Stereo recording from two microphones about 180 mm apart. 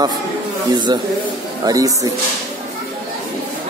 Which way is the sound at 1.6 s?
20° right (ahead or behind).